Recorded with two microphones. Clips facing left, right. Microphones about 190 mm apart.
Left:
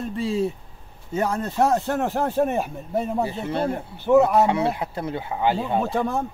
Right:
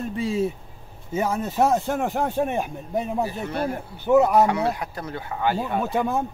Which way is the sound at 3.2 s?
25° left (ahead or behind).